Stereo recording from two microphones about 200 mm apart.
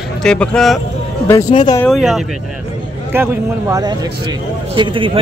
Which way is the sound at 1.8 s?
Centre (ahead or behind).